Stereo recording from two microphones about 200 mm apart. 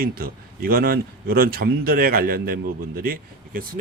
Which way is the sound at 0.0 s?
50° right (ahead or behind).